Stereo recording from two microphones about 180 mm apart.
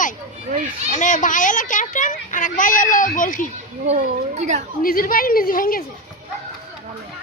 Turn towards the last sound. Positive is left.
turn(degrees=50)  # may be behind; listen again after turning